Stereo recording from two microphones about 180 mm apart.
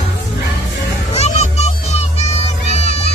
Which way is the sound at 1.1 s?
35° left (ahead or behind).